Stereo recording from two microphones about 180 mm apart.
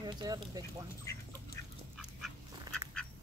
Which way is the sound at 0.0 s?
20° right (ahead or behind).